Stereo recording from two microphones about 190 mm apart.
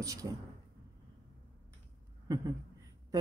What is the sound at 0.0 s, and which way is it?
Speech, 15° right (ahead or behind).